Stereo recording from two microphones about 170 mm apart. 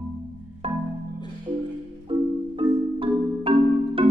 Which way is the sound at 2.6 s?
30° right (ahead or behind).